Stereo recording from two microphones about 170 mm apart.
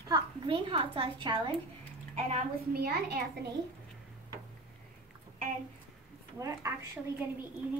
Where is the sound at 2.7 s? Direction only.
60° right (ahead or behind).